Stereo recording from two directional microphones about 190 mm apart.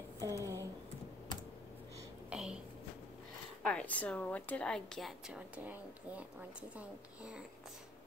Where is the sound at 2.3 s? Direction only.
5° right (ahead or behind).